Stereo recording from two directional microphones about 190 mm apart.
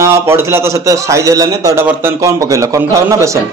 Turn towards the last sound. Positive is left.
turn(degrees=-15)  # may be behind; listen again after turning